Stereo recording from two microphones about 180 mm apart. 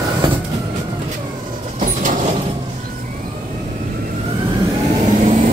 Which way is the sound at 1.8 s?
45° right (ahead or behind).